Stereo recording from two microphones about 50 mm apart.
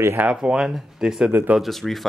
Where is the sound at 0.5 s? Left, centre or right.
Centre.